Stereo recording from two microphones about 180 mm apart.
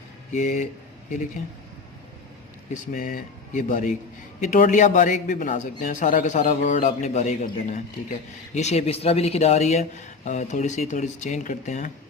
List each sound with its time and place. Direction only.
0.3 s a man's voice: 45° left (ahead or behind)
2.8 s a man's voice: 50° left (ahead or behind)